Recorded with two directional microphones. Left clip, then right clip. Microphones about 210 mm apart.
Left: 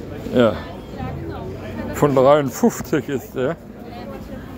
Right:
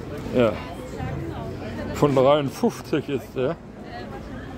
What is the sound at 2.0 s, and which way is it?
Speech, 10° left (ahead or behind).